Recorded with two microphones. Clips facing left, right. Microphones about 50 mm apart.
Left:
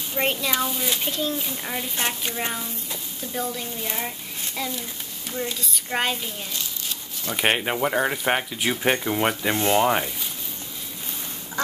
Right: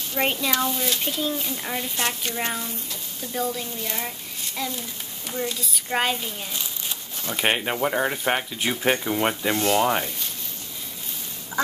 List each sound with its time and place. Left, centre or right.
0.2 s speech: centre
2.0 s speech: centre
2.4 s a child's voice: centre
6.5 s a sound: centre
7.2 s speech: centre
9.5 s speech: left
9.8 s speech: centre